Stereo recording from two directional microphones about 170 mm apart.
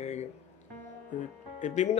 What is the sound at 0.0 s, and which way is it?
Music, 40° left (ahead or behind).